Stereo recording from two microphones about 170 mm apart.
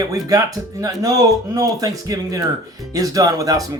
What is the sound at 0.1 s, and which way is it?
Speech, 20° right (ahead or behind).